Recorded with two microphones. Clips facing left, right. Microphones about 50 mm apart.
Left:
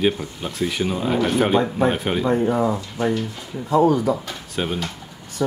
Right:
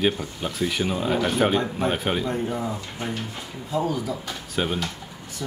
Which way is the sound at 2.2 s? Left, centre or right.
Left.